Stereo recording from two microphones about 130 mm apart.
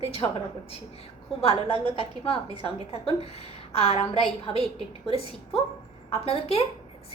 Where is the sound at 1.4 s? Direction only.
45° left (ahead or behind).